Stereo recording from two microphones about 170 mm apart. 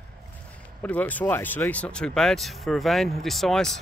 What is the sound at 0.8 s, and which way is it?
Speech, 10° left (ahead or behind).